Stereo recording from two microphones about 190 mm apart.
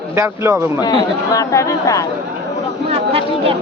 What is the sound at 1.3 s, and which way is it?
Speech, 15° left (ahead or behind).